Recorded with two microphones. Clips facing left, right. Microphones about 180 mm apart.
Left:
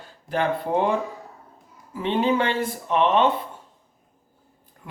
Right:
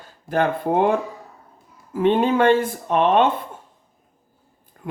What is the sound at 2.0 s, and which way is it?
Speech, 50° right (ahead or behind).